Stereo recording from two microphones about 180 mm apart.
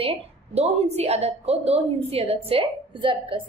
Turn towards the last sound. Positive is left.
turn(degrees=-30)  # may be behind; listen again after turning